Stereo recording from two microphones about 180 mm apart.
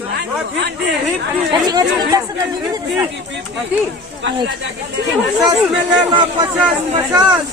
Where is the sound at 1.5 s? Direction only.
20° right (ahead or behind).